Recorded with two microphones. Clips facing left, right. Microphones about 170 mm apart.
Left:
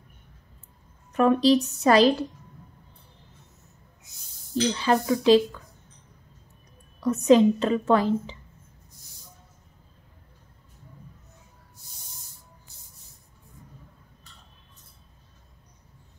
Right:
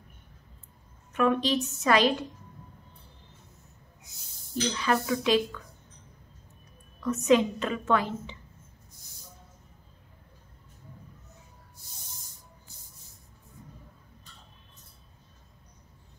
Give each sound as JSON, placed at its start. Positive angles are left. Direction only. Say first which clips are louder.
{"t": 1.1, "sound": "a woman's voice", "louder": "left 6 dB", "side_deg": 35}
{"t": 4.7, "sound": "a woman's voice", "louder": "left 2 dB", "side_deg": 30}
{"t": 7.0, "sound": "a woman's voice", "louder": "left 5 dB", "side_deg": 35}